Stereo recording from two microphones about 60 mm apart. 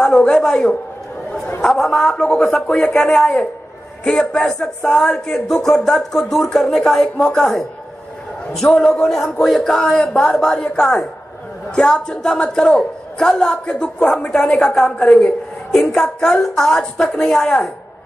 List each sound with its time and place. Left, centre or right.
0.0 s speech: centre
8.6 s speech: centre